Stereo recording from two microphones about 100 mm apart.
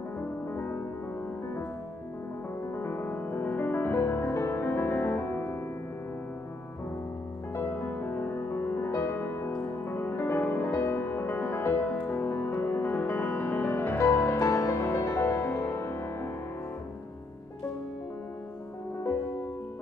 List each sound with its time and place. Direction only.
0.5 s music: 20° left (ahead or behind)
2.7 s music: 20° left (ahead or behind)
7.5 s music: 20° left (ahead or behind)